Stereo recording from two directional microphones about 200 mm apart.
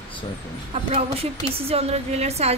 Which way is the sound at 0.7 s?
30° right (ahead or behind).